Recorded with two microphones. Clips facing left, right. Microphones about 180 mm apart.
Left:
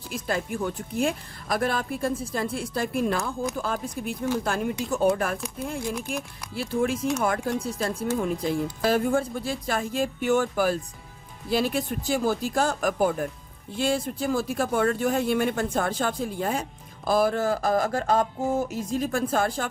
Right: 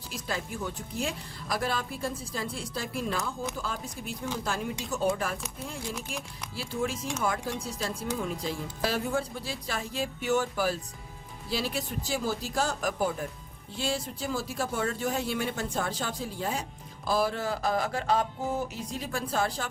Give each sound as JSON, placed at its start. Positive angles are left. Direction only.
{"t": 0.1, "sound": "a woman's voice", "side_deg": 55}
{"t": 6.6, "sound": "a woman's voice", "side_deg": 55}